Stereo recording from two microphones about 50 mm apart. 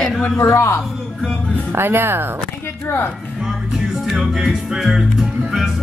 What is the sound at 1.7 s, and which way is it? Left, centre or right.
Speech, right.